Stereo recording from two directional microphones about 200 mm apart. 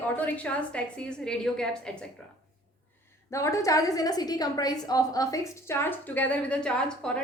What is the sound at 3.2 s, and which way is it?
A woman's voice, 15° left (ahead or behind).